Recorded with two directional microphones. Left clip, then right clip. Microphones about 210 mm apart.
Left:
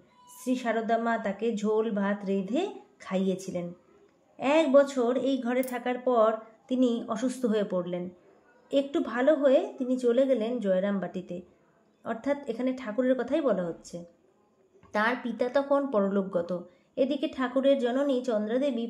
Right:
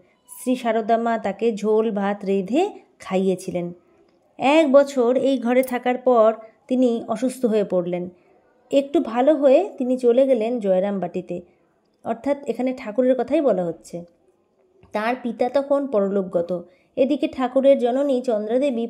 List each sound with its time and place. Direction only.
0.4 s speech: 30° right (ahead or behind)